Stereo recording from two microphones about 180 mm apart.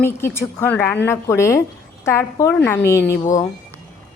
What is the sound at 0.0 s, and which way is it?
A woman's voice, 15° left (ahead or behind).